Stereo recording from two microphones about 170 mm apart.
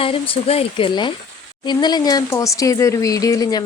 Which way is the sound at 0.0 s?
30° left (ahead or behind).